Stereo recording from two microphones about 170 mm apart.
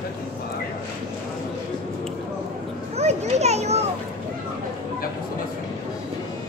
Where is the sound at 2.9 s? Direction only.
40° right (ahead or behind).